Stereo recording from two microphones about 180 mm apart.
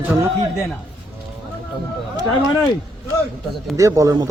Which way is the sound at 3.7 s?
20° right (ahead or behind).